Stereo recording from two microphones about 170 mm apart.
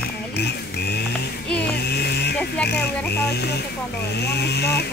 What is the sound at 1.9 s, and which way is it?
Chainsaw, 70° left (ahead or behind).